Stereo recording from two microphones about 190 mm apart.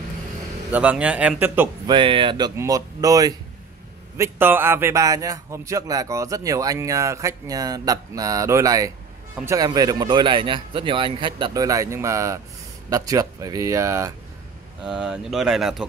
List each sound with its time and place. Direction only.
0.7 s a man's voice: 10° right (ahead or behind)
1.9 s a man's voice: 25° right (ahead or behind)
14.9 s speech: 5° right (ahead or behind)